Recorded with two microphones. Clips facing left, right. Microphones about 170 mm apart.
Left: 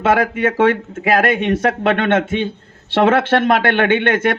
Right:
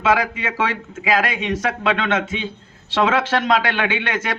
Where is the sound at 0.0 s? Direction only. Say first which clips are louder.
Left 4 dB; 55° left (ahead or behind).